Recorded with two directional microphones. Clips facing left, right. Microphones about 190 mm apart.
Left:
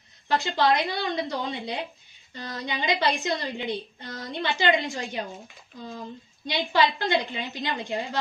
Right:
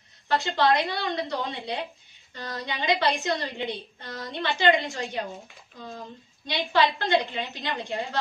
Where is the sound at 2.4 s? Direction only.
15° left (ahead or behind).